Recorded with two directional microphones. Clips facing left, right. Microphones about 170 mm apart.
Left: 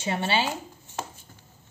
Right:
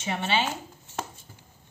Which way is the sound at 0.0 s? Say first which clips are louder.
Left 1 dB; 35° left (ahead or behind).